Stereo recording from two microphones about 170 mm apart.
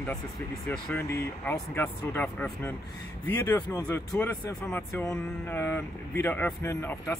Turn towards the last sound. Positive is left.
turn(degrees=15)  # may be behind; listen again after turning